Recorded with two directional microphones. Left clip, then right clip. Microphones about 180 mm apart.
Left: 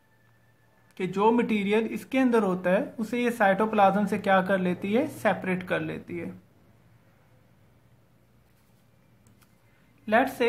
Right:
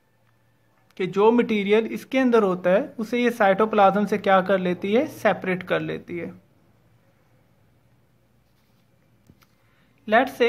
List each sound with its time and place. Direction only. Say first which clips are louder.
0.9 s speech: right 5 dB; 35° right (ahead or behind)
10.0 s speech: right 4 dB; 35° right (ahead or behind)